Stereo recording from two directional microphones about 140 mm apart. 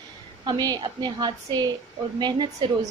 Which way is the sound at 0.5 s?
30° right (ahead or behind).